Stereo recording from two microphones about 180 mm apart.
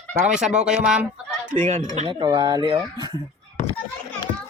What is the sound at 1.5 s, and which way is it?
Speech, 45° right (ahead or behind).